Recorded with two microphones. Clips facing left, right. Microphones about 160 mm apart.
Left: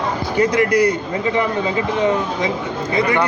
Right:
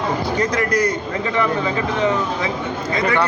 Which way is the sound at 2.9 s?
15° left (ahead or behind).